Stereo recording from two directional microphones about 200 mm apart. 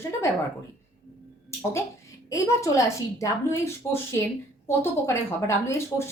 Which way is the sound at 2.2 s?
15° left (ahead or behind).